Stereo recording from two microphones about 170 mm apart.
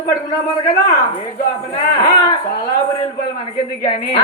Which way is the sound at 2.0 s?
20° left (ahead or behind).